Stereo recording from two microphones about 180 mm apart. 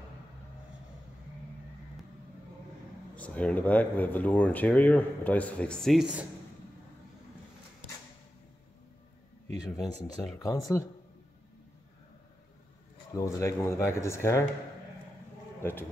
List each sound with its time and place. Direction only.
3.2 s speech: 5° left (ahead or behind)
10.4 s speech: 20° left (ahead or behind)
13.1 s speech: 15° left (ahead or behind)
15.6 s speech: 10° left (ahead or behind)